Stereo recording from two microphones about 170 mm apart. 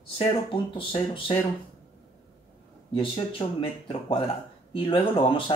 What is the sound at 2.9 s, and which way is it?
Speech, 30° left (ahead or behind).